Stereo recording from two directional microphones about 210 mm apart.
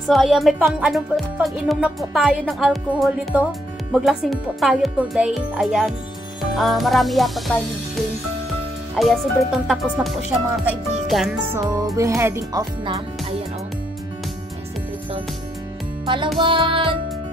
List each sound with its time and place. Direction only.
0.1 s speech: centre (ahead or behind)
11.7 s speech: 15° right (ahead or behind)
16.3 s music: 25° right (ahead or behind)